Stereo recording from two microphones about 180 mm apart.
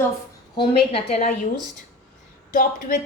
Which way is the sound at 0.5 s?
30° left (ahead or behind).